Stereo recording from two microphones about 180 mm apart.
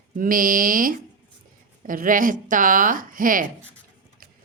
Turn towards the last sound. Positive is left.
turn(degrees=-50)  # may be behind; listen again after turning